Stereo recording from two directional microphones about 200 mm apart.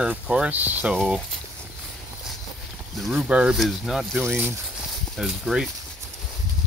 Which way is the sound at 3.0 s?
Centre (ahead or behind).